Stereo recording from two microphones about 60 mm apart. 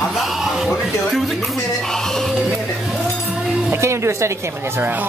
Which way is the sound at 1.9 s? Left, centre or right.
Centre.